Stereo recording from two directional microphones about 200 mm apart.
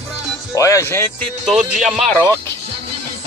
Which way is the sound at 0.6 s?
15° left (ahead or behind).